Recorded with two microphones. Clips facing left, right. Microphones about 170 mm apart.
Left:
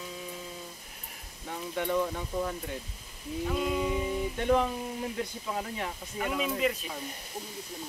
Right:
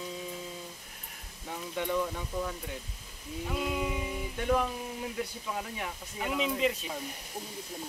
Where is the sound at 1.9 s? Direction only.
10° left (ahead or behind).